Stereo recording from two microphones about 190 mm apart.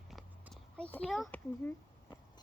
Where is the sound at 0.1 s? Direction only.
Centre (ahead or behind).